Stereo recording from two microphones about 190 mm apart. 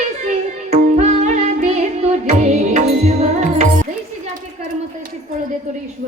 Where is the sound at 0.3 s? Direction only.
35° right (ahead or behind).